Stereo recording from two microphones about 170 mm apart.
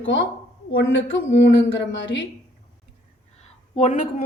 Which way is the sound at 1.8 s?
90° left.